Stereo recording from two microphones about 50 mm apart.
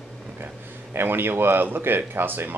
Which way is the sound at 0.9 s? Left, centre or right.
Right.